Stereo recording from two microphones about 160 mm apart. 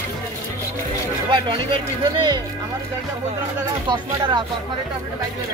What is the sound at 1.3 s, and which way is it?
Speech, 30° right (ahead or behind).